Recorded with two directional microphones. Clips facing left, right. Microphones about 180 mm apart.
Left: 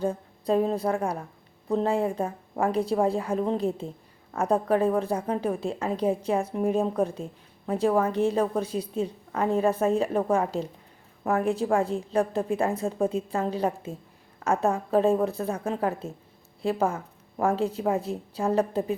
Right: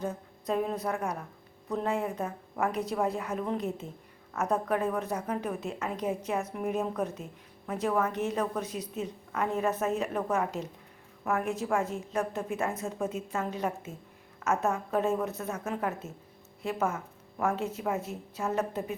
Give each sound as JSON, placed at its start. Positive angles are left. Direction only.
{"t": 0.0, "sound": "a woman's voice", "side_deg": 30}